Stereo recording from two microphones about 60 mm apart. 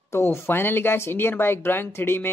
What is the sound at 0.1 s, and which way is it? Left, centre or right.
Speech, left.